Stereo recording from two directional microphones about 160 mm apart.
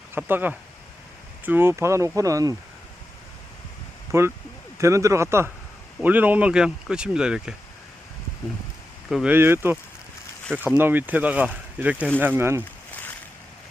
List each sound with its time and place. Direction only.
0.1 s speech: 10° right (ahead or behind)
4.1 s speech: 20° right (ahead or behind)
9.0 s speech: centre (ahead or behind)
9.3 s speech: 15° right (ahead or behind)
11.9 s speech: 10° left (ahead or behind)
12.2 s speech: 15° right (ahead or behind)